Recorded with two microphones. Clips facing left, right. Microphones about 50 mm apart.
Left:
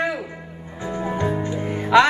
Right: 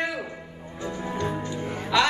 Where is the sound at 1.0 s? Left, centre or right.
Left.